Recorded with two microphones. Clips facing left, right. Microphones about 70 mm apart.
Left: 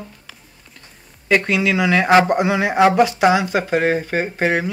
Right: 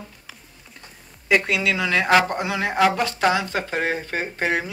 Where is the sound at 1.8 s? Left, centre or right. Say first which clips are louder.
Left 5 dB; centre.